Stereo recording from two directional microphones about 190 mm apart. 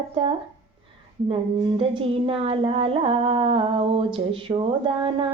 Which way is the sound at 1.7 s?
30° right (ahead or behind).